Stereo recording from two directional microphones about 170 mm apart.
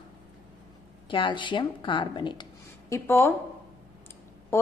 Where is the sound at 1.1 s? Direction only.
30° left (ahead or behind).